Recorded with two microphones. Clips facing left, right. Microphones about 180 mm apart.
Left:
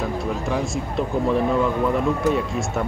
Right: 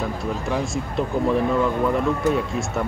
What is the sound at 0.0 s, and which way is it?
Speech, centre (ahead or behind).